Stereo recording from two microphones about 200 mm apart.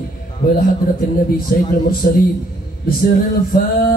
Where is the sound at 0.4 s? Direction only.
50° left (ahead or behind).